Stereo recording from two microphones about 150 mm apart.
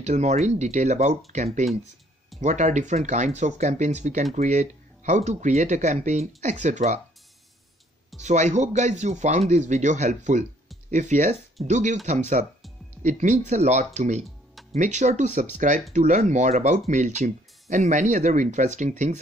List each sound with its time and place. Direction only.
0.0 s speech: 50° right (ahead or behind)
8.2 s speech: 50° right (ahead or behind)